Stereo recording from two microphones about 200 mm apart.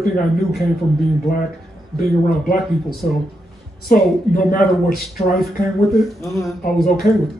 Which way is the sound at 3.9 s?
45° left (ahead or behind).